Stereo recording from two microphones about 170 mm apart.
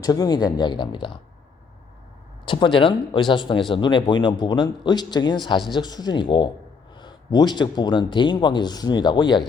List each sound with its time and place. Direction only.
0.0 s speech: 20° left (ahead or behind)
2.4 s speech: 30° left (ahead or behind)